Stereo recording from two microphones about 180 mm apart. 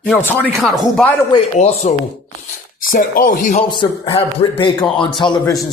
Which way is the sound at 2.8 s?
50° left (ahead or behind).